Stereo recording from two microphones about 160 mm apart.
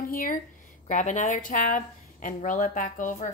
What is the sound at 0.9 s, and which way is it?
A woman's voice, 50° left (ahead or behind).